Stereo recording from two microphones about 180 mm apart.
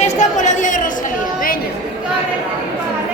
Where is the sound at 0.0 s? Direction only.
40° left (ahead or behind).